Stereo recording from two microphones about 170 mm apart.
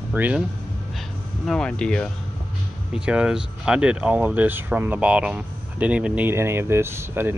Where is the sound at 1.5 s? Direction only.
5° left (ahead or behind).